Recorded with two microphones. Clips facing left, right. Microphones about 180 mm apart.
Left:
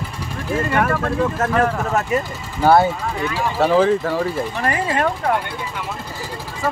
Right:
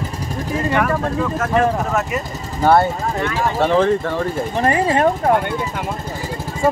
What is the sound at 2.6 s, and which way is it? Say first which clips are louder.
Speech: even; 5° left (ahead or behind).